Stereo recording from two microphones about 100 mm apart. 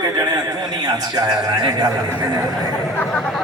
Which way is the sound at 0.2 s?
45° right (ahead or behind).